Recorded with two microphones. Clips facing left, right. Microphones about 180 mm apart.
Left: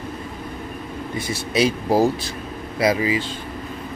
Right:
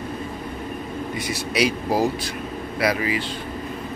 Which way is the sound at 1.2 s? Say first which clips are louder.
Left 3 dB; 25° left (ahead or behind).